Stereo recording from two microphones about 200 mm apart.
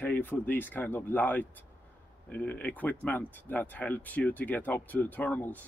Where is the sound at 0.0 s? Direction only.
10° left (ahead or behind).